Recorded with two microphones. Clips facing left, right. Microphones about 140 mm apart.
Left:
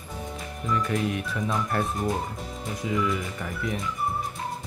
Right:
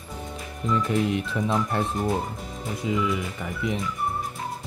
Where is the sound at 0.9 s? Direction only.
25° right (ahead or behind).